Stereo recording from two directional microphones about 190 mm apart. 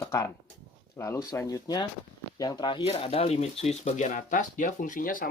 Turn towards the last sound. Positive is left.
turn(degrees=45)  # may be behind; listen again after turning